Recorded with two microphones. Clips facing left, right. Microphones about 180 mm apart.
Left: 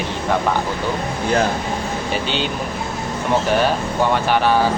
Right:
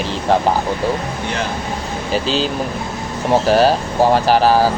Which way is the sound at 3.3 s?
35° right (ahead or behind).